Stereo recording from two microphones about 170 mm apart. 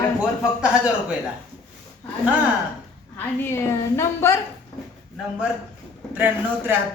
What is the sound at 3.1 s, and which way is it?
A woman's voice, 15° left (ahead or behind).